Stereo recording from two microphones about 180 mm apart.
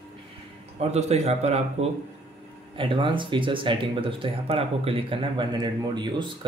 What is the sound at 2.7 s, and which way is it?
Speech, 30° right (ahead or behind).